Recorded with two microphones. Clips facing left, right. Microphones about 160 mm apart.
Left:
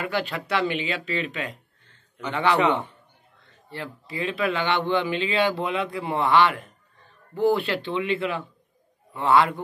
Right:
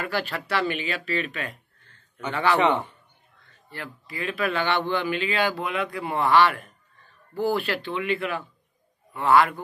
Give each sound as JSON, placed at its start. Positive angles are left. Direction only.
{"t": 0.0, "sound": "speech", "side_deg": 20}
{"t": 2.5, "sound": "a man's voice", "side_deg": 0}
{"t": 3.7, "sound": "a man's voice", "side_deg": 25}